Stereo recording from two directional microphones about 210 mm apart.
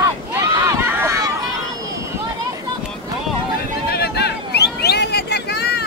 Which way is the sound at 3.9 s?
50° left (ahead or behind).